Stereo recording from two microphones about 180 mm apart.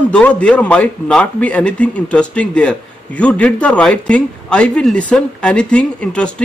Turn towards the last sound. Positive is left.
turn(degrees=5)  # may be behind; listen again after turning